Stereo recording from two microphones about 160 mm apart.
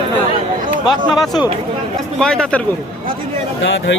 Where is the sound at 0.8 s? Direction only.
Centre (ahead or behind).